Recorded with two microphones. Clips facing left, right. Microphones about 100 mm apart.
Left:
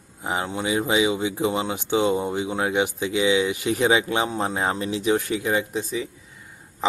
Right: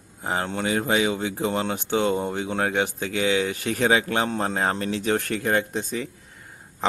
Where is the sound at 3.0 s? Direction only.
50° right (ahead or behind).